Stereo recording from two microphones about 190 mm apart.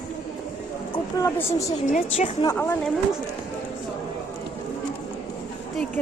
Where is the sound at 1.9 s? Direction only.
35° left (ahead or behind).